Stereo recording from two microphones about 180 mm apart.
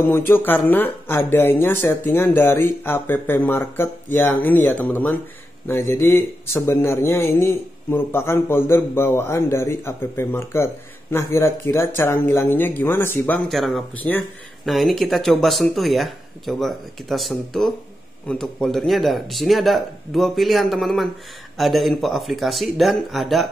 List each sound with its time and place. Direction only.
0.0 s a man's voice: 10° left (ahead or behind)
13.5 s speech: centre (ahead or behind)